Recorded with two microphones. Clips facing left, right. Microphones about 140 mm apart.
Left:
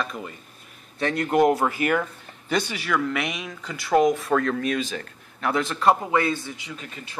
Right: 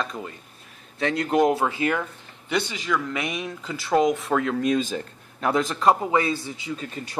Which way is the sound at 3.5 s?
25° right (ahead or behind).